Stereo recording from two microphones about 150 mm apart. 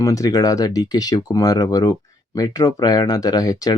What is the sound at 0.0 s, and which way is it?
Speech, 25° left (ahead or behind).